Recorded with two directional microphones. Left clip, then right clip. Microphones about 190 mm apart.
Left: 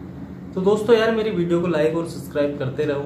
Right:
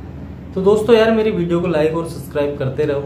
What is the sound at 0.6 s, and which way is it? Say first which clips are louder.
Speech: right 5 dB; 10° right (ahead or behind).